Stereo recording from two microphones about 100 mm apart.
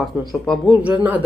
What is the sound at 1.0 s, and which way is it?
Speech, 15° right (ahead or behind).